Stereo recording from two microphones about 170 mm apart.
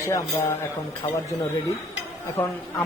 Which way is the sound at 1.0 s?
35° left (ahead or behind).